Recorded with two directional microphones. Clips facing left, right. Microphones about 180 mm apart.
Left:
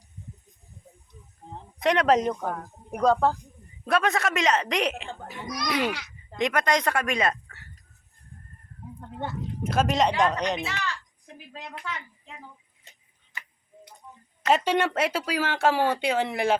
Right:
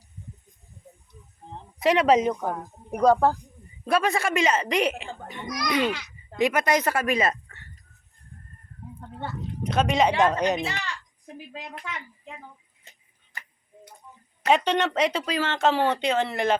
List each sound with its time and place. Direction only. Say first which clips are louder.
1.8 s a child's voice: right 2 dB; centre (ahead or behind)
6.3 s speech: right 2 dB; 5° right (ahead or behind)
9.6 s a child's voice: right 1 dB; 5° left (ahead or behind)
10.6 s speech: right 2 dB; 35° right (ahead or behind)
14.5 s speech: right 1 dB; 10° left (ahead or behind)